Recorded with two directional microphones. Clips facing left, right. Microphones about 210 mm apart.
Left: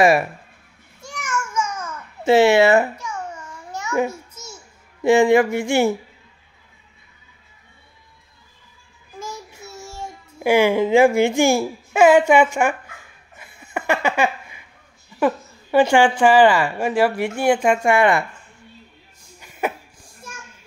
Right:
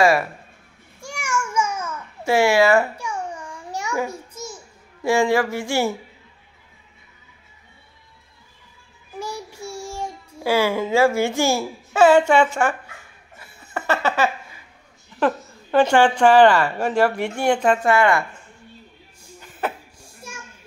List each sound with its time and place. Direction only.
1.0 s a sound: 10° right (ahead or behind)
2.2 s a woman's voice: 20° left (ahead or behind)
3.0 s babbling: 15° right (ahead or behind)
5.0 s a woman's voice: 20° left (ahead or behind)
9.8 s child singing: 15° right (ahead or behind)
10.4 s a woman's voice: 15° left (ahead or behind)
13.4 s laughter: 10° left (ahead or behind)
15.1 s a woman's voice: 10° left (ahead or behind)
19.4 s a sound: 10° left (ahead or behind)